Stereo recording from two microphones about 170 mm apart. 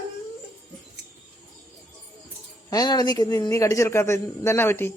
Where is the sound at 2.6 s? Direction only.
25° left (ahead or behind).